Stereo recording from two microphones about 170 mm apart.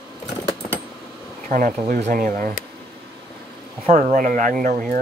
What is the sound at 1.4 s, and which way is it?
Speech, 50° right (ahead or behind).